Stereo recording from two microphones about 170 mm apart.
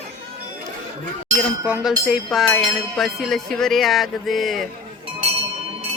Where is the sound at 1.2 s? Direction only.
10° right (ahead or behind).